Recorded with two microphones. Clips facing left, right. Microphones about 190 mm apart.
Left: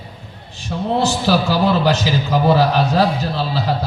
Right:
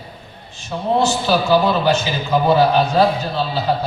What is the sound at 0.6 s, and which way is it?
A man's voice, 65° left (ahead or behind).